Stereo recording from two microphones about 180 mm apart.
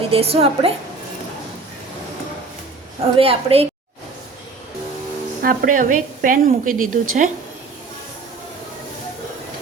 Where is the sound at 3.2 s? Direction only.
35° right (ahead or behind).